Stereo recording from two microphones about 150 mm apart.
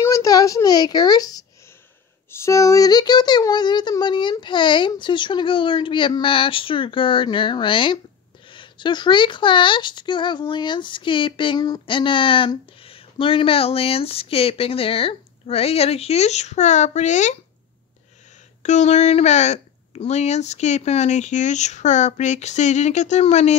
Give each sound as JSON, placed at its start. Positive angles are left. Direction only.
{"t": 0.0, "sound": "a sound", "side_deg": 20}
{"t": 2.3, "sound": "speech", "side_deg": 20}
{"t": 18.6, "sound": "speech", "side_deg": 50}